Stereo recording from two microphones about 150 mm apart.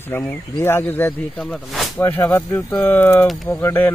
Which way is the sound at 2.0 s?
15° left (ahead or behind).